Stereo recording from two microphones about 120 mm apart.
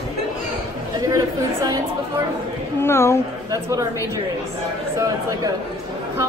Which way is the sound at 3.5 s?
30° right (ahead or behind).